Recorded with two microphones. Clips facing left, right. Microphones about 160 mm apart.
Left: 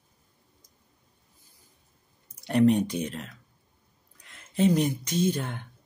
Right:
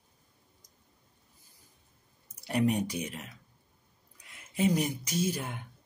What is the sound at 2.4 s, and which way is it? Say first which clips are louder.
Speech: left 7 dB; 5° right (ahead or behind).